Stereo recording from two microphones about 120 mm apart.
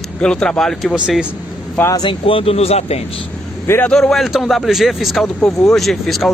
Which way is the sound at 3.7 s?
15° left (ahead or behind).